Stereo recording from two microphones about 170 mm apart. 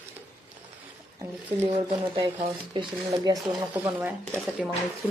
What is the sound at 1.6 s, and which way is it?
Speech, 30° right (ahead or behind).